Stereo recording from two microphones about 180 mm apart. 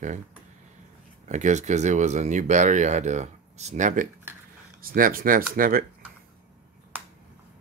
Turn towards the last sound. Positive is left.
turn(degrees=-50)  # may be behind; listen again after turning